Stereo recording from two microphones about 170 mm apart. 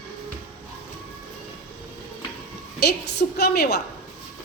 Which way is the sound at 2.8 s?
75° left (ahead or behind).